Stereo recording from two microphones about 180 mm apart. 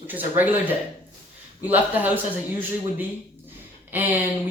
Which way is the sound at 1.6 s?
10° right (ahead or behind).